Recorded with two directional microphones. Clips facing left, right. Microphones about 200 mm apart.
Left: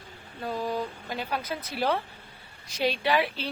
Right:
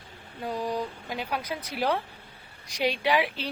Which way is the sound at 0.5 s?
15° right (ahead or behind).